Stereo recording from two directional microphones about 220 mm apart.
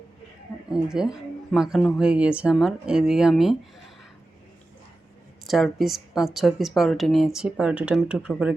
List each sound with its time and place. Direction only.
0.7 s a woman's voice: 5° right (ahead or behind)
5.5 s a woman's voice: centre (ahead or behind)